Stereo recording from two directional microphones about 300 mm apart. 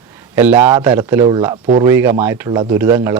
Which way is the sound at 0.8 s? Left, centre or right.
Centre.